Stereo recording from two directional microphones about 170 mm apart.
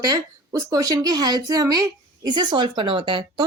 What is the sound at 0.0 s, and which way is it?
A woman's voice, 20° right (ahead or behind).